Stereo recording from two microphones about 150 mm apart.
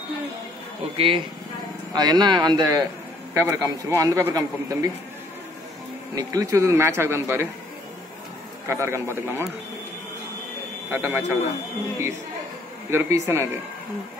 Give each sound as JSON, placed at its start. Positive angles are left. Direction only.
{"t": 0.9, "sound": "a man's voice", "side_deg": -35}
{"t": 6.1, "sound": "a man's voice", "side_deg": -20}
{"t": 8.6, "sound": "a man's voice", "side_deg": -20}
{"t": 10.9, "sound": "a man's voice", "side_deg": -15}
{"t": 12.9, "sound": "a man's voice", "side_deg": -15}